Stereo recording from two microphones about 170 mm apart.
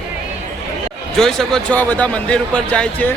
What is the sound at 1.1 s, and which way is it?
Speech, 5° left (ahead or behind).